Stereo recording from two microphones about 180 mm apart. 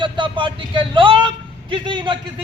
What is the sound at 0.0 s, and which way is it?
Vehicle, 25° right (ahead or behind).